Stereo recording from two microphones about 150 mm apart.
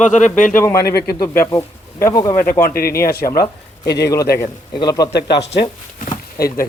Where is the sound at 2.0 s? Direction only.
25° left (ahead or behind).